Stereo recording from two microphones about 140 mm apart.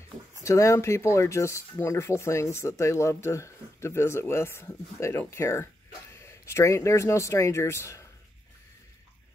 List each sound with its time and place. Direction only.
0.4 s speech: 20° left (ahead or behind)